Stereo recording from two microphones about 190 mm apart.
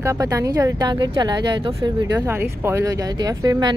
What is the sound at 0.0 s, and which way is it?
Speech, 15° right (ahead or behind).